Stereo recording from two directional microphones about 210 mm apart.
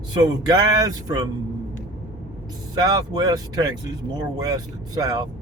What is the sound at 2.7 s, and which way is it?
A man's voice, 20° right (ahead or behind).